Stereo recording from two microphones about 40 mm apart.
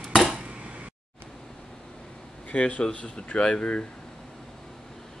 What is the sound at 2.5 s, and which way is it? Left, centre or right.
Speech, left.